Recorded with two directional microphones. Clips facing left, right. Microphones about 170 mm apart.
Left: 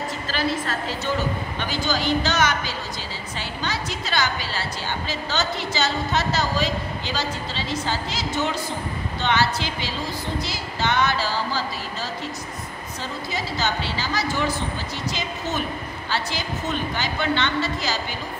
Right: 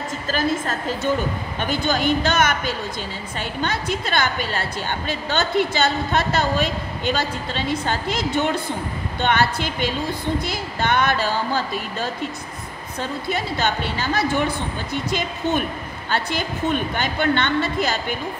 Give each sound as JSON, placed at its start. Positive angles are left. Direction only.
{"t": 0.3, "sound": "a woman's voice", "side_deg": -50}
{"t": 13.3, "sound": "a woman's voice", "side_deg": -60}